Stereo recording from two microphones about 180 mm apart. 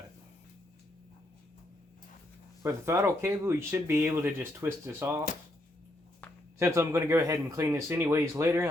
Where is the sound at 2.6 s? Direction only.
15° right (ahead or behind).